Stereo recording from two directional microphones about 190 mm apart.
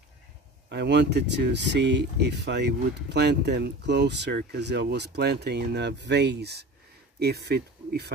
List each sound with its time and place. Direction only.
0.7 s speech: 65° right (ahead or behind)